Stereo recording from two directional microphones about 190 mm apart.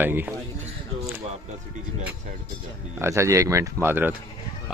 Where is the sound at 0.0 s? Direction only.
10° right (ahead or behind).